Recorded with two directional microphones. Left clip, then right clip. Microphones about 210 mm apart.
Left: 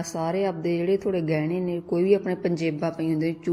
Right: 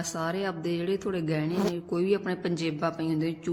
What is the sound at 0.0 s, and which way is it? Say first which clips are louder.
Speech: left 5 dB; centre (ahead or behind).